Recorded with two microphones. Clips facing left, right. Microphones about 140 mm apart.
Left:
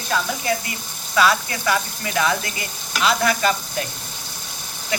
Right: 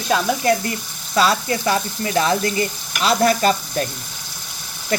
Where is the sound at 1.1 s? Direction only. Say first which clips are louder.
Right 1 dB; 30° right (ahead or behind).